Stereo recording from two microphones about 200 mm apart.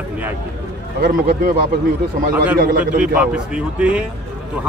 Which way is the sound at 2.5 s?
45° right (ahead or behind).